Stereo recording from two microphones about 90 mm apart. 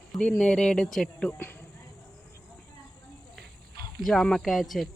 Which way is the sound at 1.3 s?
20° left (ahead or behind).